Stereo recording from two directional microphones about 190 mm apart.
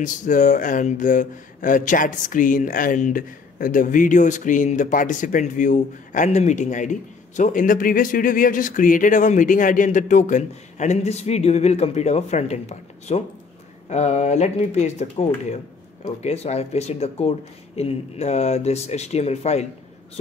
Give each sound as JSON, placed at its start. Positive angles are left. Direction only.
{"t": 0.0, "sound": "speech", "side_deg": 45}